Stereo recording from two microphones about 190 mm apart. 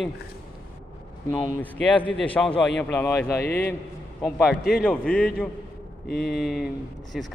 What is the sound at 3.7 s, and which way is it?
A man's voice, 5° left (ahead or behind).